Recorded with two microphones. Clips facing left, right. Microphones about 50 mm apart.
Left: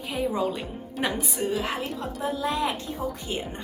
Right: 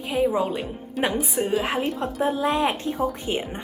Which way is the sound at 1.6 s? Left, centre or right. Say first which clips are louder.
Right 5 dB; right.